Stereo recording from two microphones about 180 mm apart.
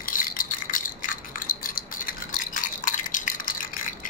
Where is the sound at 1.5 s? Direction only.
50° left (ahead or behind).